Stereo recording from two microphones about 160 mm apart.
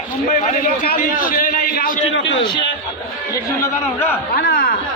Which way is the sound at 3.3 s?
15° left (ahead or behind).